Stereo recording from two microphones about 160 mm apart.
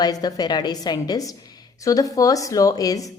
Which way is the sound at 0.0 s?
25° left (ahead or behind).